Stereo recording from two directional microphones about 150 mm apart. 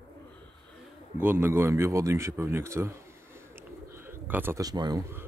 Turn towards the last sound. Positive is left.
turn(degrees=-25)  # may be behind; listen again after turning